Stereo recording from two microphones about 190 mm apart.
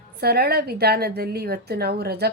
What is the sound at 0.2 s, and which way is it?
A woman's voice, 55° right (ahead or behind).